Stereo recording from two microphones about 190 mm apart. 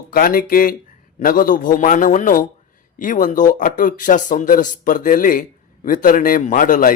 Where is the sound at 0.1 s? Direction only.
50° left (ahead or behind).